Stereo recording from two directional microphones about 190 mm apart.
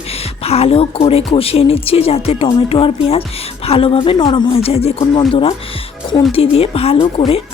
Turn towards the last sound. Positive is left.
turn(degrees=30)  # may be behind; listen again after turning